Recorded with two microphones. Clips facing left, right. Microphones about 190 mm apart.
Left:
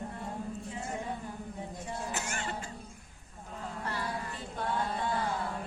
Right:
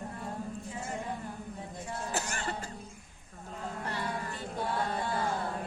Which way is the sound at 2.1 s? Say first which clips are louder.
Right 2 dB; 35° right (ahead or behind).